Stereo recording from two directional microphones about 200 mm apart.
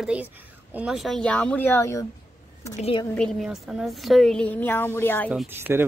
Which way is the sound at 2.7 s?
30° left (ahead or behind).